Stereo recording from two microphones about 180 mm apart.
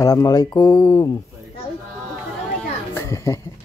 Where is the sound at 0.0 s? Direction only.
20° left (ahead or behind).